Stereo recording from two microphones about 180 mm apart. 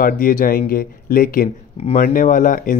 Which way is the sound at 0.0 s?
50° left (ahead or behind).